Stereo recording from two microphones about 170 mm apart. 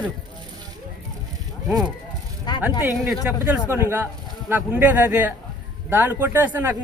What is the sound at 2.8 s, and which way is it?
A man's voice, 10° right (ahead or behind).